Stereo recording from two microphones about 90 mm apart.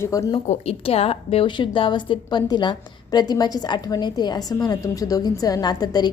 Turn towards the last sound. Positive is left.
turn(degrees=50)  # may be behind; listen again after turning